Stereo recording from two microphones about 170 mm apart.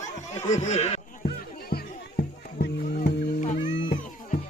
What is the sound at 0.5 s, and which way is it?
Speech, 45° left (ahead or behind).